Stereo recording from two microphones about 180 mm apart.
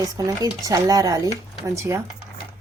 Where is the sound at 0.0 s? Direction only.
20° right (ahead or behind).